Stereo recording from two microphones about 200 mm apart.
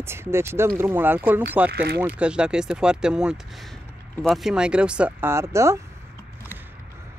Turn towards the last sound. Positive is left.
turn(degrees=-15)  # may be behind; listen again after turning